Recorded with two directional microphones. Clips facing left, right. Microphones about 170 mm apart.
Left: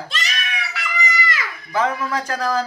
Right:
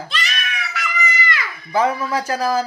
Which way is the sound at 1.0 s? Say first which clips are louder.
Left 1 dB; 40° left (ahead or behind).